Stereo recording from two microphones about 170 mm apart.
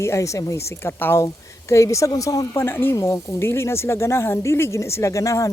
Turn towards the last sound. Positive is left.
turn(degrees=20)  # may be behind; listen again after turning